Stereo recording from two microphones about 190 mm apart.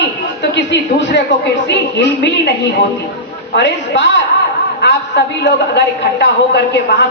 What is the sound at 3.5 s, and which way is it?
A woman's voice, 70° left (ahead or behind).